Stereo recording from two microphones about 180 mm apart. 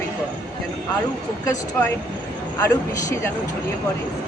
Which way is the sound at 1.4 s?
15° left (ahead or behind).